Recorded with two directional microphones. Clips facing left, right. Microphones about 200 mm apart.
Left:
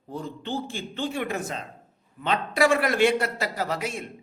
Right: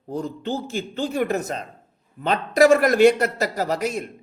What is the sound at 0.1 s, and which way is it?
A man's voice, 40° right (ahead or behind).